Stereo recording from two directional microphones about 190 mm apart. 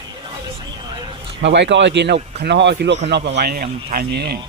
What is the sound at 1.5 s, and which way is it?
Speech, 70° right (ahead or behind).